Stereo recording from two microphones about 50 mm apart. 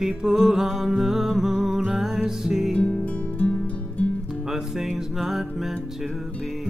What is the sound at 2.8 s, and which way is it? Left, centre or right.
Music, left.